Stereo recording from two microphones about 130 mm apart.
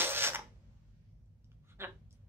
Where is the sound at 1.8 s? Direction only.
20° right (ahead or behind).